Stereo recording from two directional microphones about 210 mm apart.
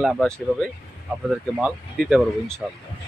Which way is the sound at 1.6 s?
Centre (ahead or behind).